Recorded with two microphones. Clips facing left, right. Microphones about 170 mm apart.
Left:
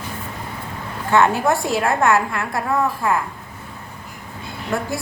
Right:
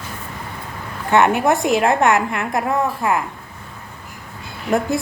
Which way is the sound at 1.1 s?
20° right (ahead or behind).